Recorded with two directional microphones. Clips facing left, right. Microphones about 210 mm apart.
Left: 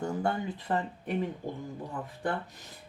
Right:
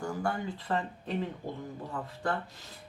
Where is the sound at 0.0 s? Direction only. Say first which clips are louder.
Left 2 dB; 20° left (ahead or behind).